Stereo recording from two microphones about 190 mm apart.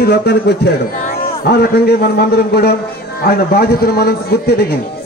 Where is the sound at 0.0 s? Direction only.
60° left (ahead or behind).